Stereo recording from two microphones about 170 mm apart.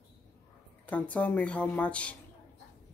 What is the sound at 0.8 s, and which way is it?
A woman's voice, 10° left (ahead or behind).